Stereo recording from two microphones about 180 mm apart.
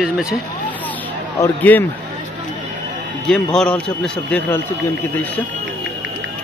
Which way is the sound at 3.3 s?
5° left (ahead or behind).